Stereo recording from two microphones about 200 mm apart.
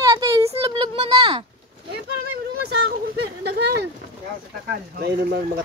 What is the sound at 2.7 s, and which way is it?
Speech, 60° right (ahead or behind).